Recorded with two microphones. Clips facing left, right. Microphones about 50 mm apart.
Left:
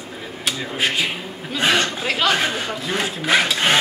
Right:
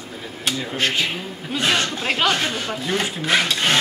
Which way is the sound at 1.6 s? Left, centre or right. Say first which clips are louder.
Left 2 dB; centre.